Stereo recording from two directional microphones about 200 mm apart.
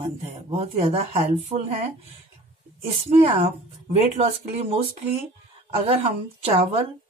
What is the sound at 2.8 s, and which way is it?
A woman's voice, 30° right (ahead or behind).